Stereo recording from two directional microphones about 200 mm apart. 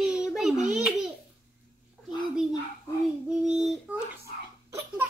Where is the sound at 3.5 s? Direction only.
5° right (ahead or behind).